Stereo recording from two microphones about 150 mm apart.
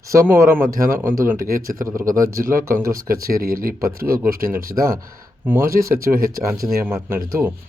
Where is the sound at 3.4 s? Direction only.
75° right (ahead or behind).